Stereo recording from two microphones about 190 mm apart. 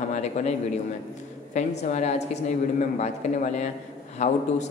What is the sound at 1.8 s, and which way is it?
A man's voice, 35° left (ahead or behind).